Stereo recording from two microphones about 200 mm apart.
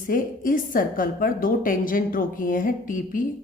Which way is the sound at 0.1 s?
45° left (ahead or behind).